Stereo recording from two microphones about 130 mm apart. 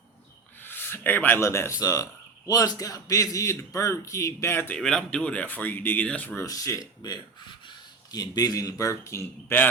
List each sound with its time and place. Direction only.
0.6 s a man's voice: 15° left (ahead or behind)
4.8 s speech: 5° left (ahead or behind)
6.4 s a man's voice: 25° left (ahead or behind)